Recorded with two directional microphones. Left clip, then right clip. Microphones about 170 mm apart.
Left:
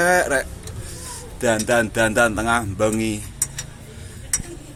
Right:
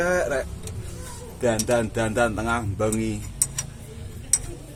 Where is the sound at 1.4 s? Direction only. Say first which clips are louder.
Left 4 dB; 15° left (ahead or behind).